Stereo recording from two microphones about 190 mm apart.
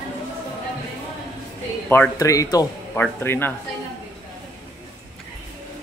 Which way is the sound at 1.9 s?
15° left (ahead or behind).